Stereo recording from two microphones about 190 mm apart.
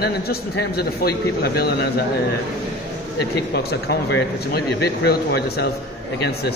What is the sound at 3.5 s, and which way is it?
Speech, 55° left (ahead or behind).